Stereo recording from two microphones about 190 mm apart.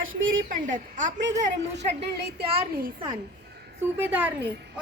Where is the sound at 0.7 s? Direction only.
40° right (ahead or behind).